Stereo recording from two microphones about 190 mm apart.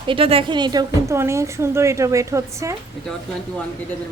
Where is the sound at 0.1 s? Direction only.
30° right (ahead or behind).